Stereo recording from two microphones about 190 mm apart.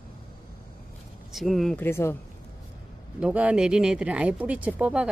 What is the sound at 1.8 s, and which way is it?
Speech, 15° left (ahead or behind).